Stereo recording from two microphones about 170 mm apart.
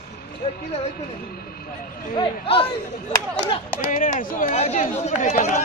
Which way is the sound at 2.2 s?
30° left (ahead or behind).